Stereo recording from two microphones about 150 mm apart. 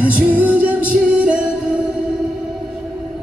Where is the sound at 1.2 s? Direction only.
5° right (ahead or behind).